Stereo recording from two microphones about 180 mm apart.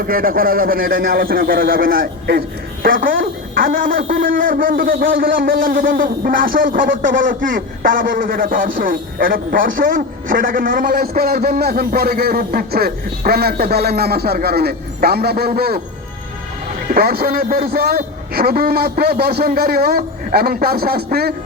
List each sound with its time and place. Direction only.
0.0 s speech: 55° right (ahead or behind)
16.9 s a man's voice: 60° right (ahead or behind)